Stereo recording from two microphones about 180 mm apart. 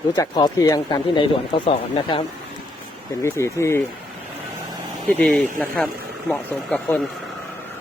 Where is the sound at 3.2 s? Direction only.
15° left (ahead or behind).